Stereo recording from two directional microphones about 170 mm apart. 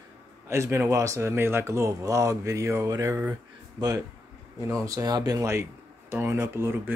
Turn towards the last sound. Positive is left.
turn(degrees=-15)  # may be behind; listen again after turning